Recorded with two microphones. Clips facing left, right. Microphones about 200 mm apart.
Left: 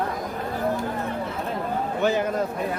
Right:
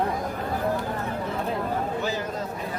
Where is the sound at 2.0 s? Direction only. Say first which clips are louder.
Left 6 dB; 60° left (ahead or behind).